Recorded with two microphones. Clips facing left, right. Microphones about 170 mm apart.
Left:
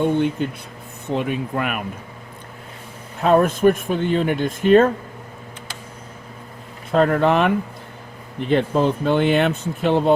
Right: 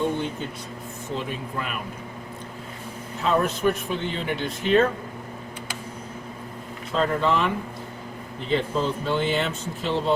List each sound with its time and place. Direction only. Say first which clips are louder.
0.4 s speech: left 7 dB; 60° left (ahead or behind)
3.2 s speech: left 7 dB; 55° left (ahead or behind)
6.9 s speech: left 6 dB; 60° left (ahead or behind)